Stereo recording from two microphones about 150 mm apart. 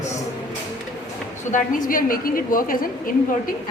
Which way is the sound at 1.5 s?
65° left (ahead or behind).